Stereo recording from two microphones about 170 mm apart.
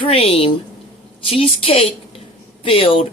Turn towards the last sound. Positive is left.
turn(degrees=30)  # may be behind; listen again after turning